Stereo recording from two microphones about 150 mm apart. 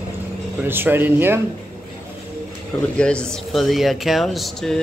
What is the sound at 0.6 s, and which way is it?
Speech, 15° right (ahead or behind).